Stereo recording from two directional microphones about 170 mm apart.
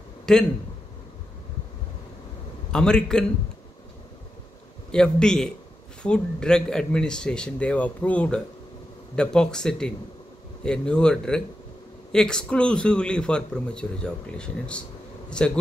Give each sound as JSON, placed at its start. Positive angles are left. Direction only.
{"t": 0.3, "sound": "a man's voice", "side_deg": 5}
{"t": 2.7, "sound": "a man's voice", "side_deg": 5}
{"t": 4.9, "sound": "a man's voice", "side_deg": 5}